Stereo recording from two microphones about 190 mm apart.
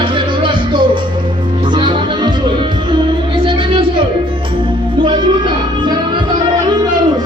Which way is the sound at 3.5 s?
25° right (ahead or behind).